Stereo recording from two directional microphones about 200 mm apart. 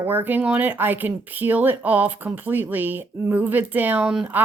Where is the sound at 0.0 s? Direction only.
10° right (ahead or behind).